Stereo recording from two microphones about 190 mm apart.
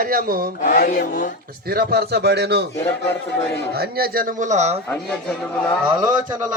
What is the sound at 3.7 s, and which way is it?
A man's voice, 55° right (ahead or behind).